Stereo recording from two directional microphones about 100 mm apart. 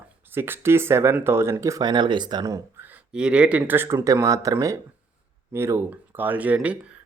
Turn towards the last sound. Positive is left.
turn(degrees=-15)  # may be behind; listen again after turning